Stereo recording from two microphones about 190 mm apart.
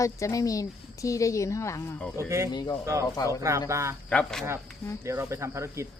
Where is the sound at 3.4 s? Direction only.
15° right (ahead or behind).